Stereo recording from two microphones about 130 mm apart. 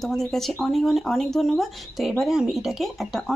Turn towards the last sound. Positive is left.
turn(degrees=0)  # may be behind; listen again after turning